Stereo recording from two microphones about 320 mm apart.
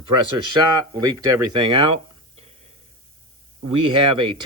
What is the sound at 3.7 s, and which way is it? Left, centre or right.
Speech, centre.